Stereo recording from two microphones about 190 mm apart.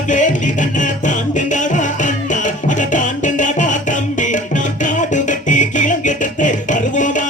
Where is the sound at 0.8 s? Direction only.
40° left (ahead or behind).